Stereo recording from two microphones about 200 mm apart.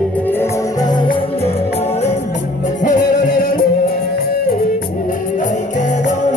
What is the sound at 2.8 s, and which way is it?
Music, 40° left (ahead or behind).